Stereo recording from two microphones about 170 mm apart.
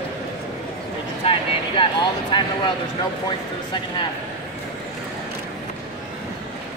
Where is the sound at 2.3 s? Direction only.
25° left (ahead or behind).